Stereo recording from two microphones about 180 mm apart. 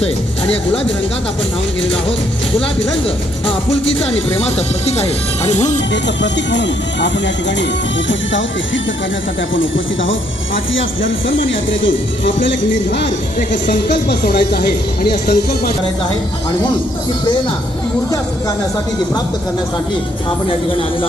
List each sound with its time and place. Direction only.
0.0 s speech: 30° left (ahead or behind)
1.8 s speech: 30° left (ahead or behind)
5.9 s a woman's voice: 80° left